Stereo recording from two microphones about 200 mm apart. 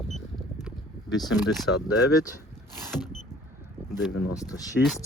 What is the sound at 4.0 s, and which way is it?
Speech, 90° left.